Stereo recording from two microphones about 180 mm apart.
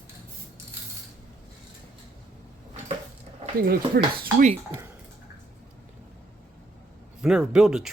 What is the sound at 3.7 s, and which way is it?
Speech, 55° right (ahead or behind).